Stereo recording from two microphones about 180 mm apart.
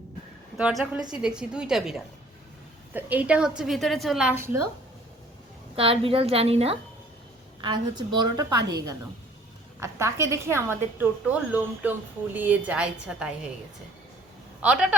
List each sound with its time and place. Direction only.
0.5 s a woman's voice: centre (ahead or behind)
5.7 s a woman's voice: 30° right (ahead or behind); by 13.3 s 5° right (ahead or behind)
14.6 s a woman's voice: 5° right (ahead or behind)